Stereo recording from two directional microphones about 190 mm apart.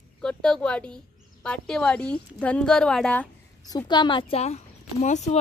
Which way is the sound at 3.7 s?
20° left (ahead or behind).